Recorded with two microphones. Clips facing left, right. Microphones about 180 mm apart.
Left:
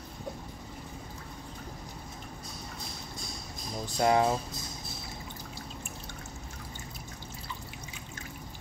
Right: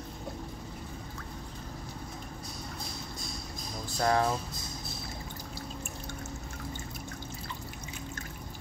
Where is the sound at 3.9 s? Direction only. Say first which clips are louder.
Left 2 dB; 15° left (ahead or behind).